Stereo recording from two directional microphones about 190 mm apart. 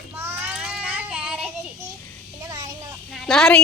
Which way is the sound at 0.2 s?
10° right (ahead or behind).